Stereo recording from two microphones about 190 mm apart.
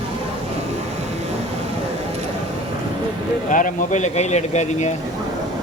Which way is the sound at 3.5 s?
40° left (ahead or behind).